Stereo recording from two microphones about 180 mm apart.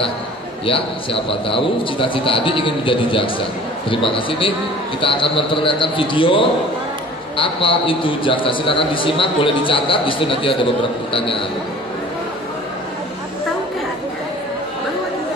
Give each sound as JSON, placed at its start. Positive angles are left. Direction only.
{"t": 0.7, "sound": "a man's voice", "side_deg": 30}